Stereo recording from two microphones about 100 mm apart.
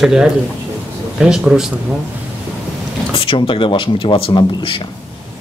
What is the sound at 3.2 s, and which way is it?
Speech, 65° left (ahead or behind).